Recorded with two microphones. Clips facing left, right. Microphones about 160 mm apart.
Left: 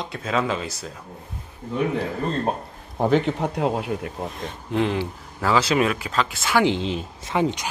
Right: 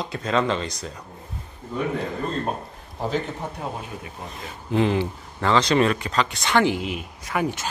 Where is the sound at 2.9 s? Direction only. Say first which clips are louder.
Left 7 dB; 60° left (ahead or behind); by 4.1 s 80° left.